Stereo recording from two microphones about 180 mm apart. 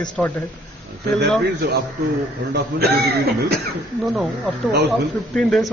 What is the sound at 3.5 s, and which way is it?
A man's voice, centre (ahead or behind).